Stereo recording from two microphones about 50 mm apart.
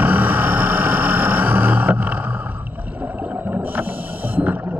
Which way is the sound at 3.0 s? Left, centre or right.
Right.